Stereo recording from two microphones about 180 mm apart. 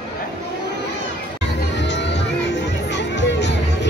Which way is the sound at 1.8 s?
80° left.